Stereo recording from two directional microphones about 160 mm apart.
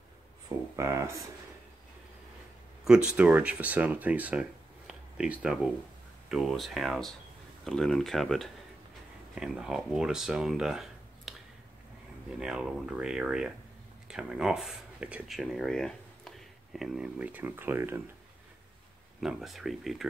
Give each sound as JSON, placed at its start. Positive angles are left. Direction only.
{"t": 0.7, "sound": "speech", "side_deg": -20}
{"t": 2.8, "sound": "speech", "side_deg": -5}
{"t": 19.2, "sound": "speech", "side_deg": 0}